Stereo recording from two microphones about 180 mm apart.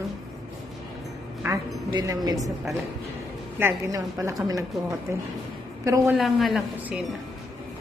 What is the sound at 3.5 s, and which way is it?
Speech, 15° right (ahead or behind).